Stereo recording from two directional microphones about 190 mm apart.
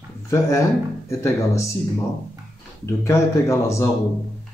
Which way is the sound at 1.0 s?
15° left (ahead or behind).